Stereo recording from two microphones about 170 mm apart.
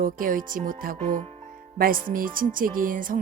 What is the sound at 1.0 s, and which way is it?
Speech, 40° right (ahead or behind).